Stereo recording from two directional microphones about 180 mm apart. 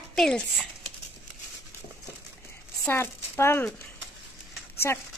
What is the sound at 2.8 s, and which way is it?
Speech, 15° left (ahead or behind).